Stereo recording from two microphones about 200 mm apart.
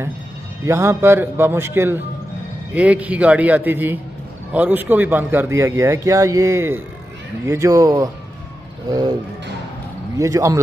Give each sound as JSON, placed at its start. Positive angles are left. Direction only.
{"t": 0.7, "sound": "a man's voice", "side_deg": -15}
{"t": 10.1, "sound": "a man's voice", "side_deg": -15}